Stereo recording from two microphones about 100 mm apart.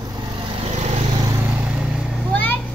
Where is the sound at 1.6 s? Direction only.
10° right (ahead or behind).